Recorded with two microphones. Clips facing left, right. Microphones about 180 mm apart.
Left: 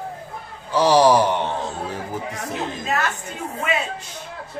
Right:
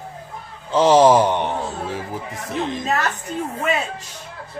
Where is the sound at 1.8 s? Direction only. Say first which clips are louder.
Even; centre (ahead or behind).